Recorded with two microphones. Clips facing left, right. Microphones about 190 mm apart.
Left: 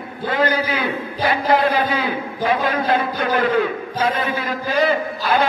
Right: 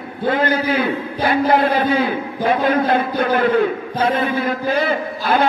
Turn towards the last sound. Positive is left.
turn(degrees=-55)  # may be behind; listen again after turning